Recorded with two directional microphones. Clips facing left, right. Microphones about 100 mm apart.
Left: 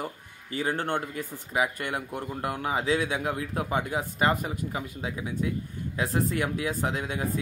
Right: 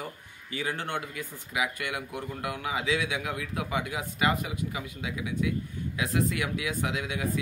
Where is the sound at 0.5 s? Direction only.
40° left (ahead or behind).